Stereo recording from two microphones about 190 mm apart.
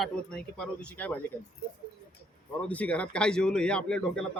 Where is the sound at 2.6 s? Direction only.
5° left (ahead or behind).